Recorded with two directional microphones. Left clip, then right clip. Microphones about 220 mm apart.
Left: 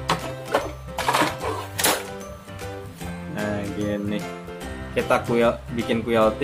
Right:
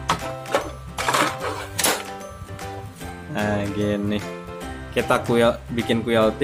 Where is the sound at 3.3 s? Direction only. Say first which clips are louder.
Right 4 dB; 30° right (ahead or behind).